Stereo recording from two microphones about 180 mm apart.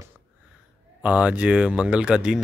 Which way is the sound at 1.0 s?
5° right (ahead or behind).